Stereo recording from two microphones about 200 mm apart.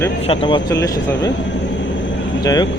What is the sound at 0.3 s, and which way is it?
Speech, 25° left (ahead or behind).